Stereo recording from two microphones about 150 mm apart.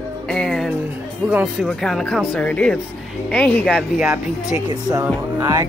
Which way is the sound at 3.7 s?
5° right (ahead or behind).